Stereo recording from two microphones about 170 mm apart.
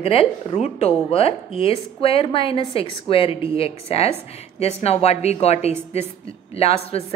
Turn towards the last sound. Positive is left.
turn(degrees=35)  # may be behind; listen again after turning